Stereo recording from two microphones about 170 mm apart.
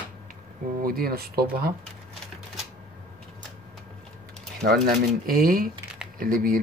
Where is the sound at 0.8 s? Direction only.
60° right (ahead or behind).